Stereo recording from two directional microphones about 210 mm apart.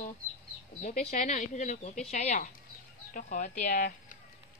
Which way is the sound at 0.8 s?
35° left (ahead or behind).